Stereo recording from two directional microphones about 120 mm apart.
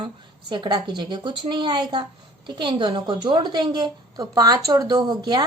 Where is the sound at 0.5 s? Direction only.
40° right (ahead or behind).